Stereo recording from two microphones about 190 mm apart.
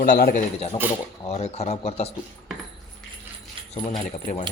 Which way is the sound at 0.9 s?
35° left (ahead or behind).